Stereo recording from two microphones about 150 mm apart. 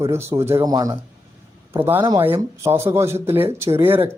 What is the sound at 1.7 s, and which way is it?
Speech, 15° right (ahead or behind).